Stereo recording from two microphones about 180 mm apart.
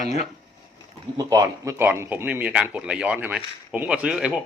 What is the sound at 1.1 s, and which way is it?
Speech, 15° right (ahead or behind).